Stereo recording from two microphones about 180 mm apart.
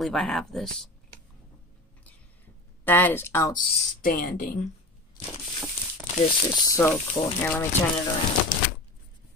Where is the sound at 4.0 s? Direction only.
55° left (ahead or behind).